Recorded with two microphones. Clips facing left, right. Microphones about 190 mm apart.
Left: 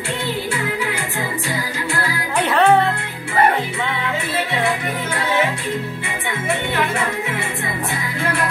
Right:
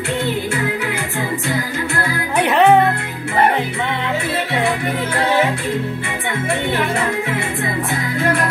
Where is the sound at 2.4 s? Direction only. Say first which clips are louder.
Right 2 dB; 15° right (ahead or behind).